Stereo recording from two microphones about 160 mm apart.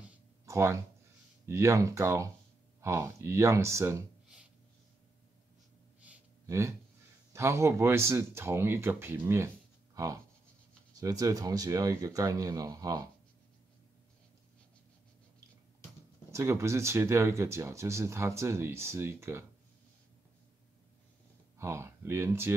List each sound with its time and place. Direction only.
0.5 s speech: 20° right (ahead or behind)
5.9 s sigh: 15° right (ahead or behind)
7.3 s speech: 15° right (ahead or behind)
16.3 s speech: 20° right (ahead or behind)
21.5 s speech: 15° right (ahead or behind)